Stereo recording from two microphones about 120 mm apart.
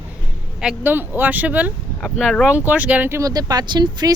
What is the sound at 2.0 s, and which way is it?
Speech, 5° left (ahead or behind).